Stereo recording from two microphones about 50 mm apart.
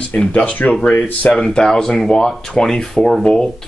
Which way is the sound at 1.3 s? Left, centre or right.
Centre.